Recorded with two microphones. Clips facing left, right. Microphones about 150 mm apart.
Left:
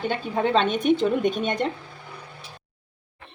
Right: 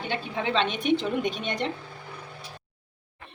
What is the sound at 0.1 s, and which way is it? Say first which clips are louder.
A woman's voice: left 4 dB; 45° left (ahead or behind).